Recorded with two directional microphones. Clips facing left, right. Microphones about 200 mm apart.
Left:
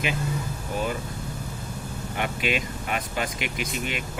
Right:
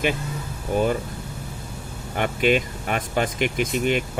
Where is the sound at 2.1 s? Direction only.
45° right (ahead or behind).